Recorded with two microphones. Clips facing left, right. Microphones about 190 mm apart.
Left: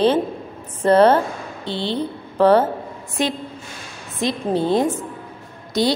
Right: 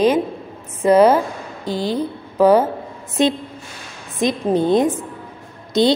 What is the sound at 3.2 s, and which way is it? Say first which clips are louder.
A woman's voice: right 5 dB; 20° right (ahead or behind).